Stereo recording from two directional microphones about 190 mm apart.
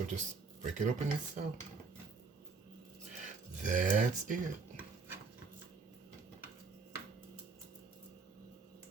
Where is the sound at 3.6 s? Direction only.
40° right (ahead or behind).